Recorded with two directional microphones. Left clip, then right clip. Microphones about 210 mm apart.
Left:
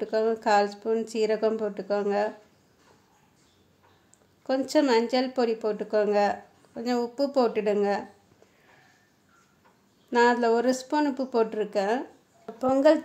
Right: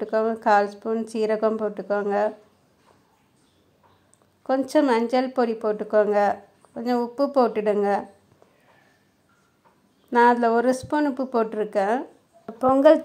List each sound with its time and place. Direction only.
0.0 s speech: 15° right (ahead or behind)
4.4 s speech: 15° right (ahead or behind)
10.1 s speech: 15° right (ahead or behind)